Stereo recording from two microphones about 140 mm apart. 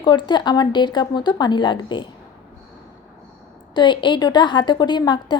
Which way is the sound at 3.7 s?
35° left (ahead or behind).